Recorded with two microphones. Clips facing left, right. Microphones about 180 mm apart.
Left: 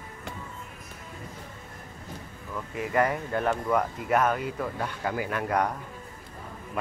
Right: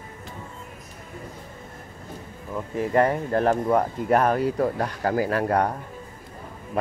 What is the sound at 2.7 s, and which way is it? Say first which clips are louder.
Speech: right 5 dB; 35° right (ahead or behind).